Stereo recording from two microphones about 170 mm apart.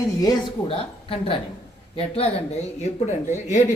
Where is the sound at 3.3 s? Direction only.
45° left (ahead or behind).